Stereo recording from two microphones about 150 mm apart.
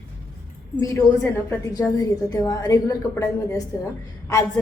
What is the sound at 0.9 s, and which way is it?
Speech, 15° left (ahead or behind).